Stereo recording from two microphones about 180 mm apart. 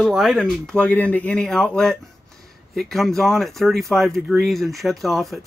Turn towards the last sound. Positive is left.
turn(degrees=0)  # may be behind; listen again after turning